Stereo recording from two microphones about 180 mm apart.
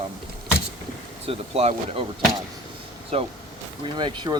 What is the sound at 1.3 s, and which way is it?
Speech, 35° right (ahead or behind).